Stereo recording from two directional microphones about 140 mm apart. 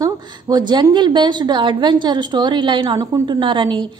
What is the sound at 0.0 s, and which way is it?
A woman's voice, 30° right (ahead or behind).